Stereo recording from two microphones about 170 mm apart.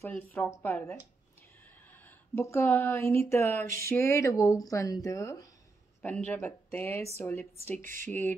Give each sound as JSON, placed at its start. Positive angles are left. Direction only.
{"t": 0.0, "sound": "speech", "side_deg": 10}
{"t": 2.0, "sound": "speech", "side_deg": 15}